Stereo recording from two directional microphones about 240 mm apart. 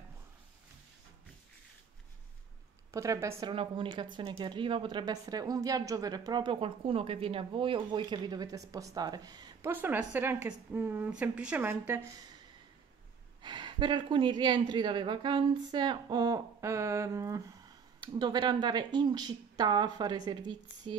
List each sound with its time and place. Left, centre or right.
2.9 s a woman's voice: centre
13.4 s a woman's voice: centre